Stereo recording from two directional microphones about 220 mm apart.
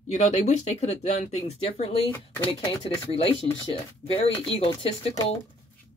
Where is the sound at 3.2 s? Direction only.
25° left (ahead or behind).